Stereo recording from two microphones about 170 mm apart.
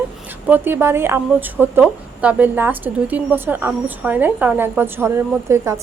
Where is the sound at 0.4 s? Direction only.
10° right (ahead or behind).